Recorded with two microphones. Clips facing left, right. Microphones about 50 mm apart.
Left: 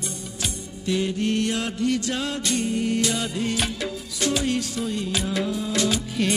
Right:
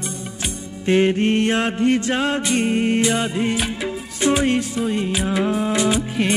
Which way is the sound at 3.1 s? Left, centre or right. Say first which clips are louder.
Right 5 dB; right.